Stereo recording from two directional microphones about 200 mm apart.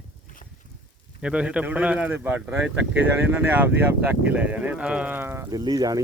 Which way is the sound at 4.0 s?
10° right (ahead or behind).